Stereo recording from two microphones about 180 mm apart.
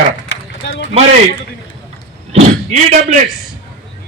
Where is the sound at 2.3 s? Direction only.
40° right (ahead or behind).